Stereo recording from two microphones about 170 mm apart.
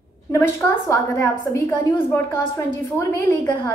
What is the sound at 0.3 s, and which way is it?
A woman's voice, 15° left (ahead or behind).